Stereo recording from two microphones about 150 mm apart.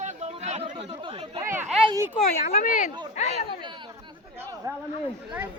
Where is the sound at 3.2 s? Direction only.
45° left (ahead or behind).